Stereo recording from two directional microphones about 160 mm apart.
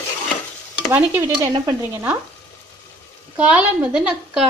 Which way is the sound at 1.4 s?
20° right (ahead or behind).